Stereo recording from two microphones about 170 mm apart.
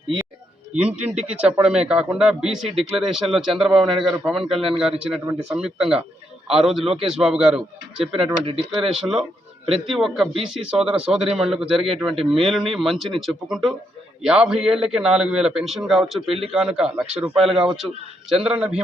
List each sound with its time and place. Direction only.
0.7 s a man's voice: 5° right (ahead or behind)
8.1 s speech: 35° right (ahead or behind)
8.8 s a man's voice: 5° right (ahead or behind)